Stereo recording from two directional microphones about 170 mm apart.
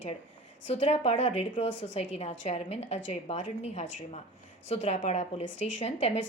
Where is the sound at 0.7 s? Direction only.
40° left (ahead or behind).